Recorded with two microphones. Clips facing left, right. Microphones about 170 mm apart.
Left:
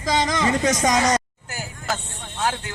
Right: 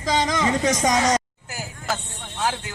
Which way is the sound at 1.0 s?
5° right (ahead or behind).